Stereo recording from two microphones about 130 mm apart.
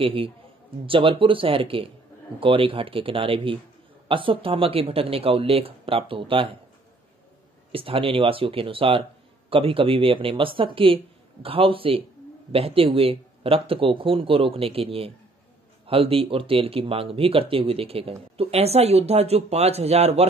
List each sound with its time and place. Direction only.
0.0 s speech: 45° right (ahead or behind)
7.7 s speech: 45° right (ahead or behind)